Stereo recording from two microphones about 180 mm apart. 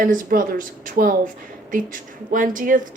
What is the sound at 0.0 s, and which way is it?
Speech, 50° right (ahead or behind).